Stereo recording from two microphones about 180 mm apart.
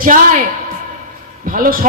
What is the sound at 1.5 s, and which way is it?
Speech, 50° right (ahead or behind).